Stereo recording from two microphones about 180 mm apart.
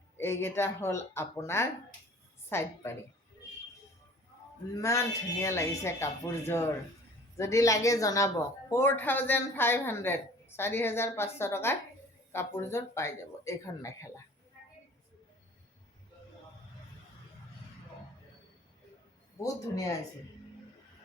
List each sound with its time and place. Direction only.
0.2 s speech: 15° left (ahead or behind)
4.8 s speech: 15° left (ahead or behind)
19.4 s speech: 20° left (ahead or behind)